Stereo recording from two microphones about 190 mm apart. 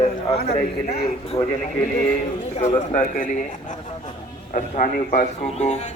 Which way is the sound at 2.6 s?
40° left (ahead or behind).